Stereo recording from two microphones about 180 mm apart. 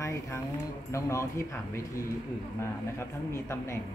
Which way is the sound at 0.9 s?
15° left (ahead or behind).